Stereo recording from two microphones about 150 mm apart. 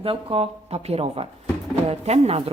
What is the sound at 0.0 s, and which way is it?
Speech, 40° right (ahead or behind).